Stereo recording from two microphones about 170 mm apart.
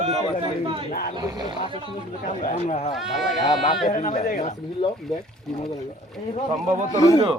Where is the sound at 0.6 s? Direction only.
30° right (ahead or behind).